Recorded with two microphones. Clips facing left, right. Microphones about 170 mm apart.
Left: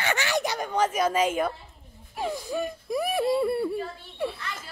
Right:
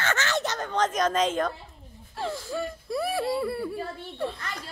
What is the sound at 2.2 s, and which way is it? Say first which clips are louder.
Speech: left 2 dB; 15° left (ahead or behind).